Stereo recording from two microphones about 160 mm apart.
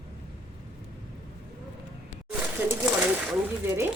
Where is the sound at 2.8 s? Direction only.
10° right (ahead or behind).